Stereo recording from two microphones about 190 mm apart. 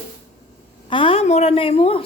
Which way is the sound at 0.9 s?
25° left (ahead or behind).